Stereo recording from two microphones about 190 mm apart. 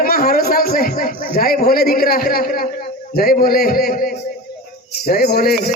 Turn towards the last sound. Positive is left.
turn(degrees=55)  # may be behind; listen again after turning